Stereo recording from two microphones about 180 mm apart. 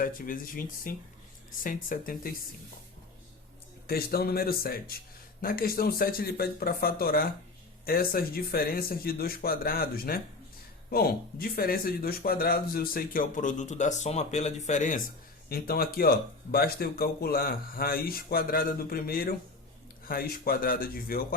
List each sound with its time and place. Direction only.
0.0 s speech: 50° left (ahead or behind)
3.8 s speech: 60° left (ahead or behind)